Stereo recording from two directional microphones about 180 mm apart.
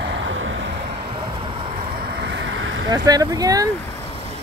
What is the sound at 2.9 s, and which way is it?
Speech, 20° right (ahead or behind).